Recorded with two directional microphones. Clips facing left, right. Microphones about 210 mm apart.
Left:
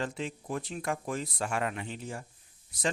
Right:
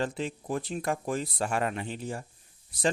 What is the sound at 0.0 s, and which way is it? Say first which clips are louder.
Speech: right 3 dB; 35° right (ahead or behind).